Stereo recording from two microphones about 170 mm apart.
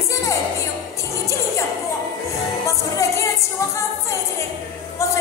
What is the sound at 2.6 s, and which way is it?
Music, 15° left (ahead or behind).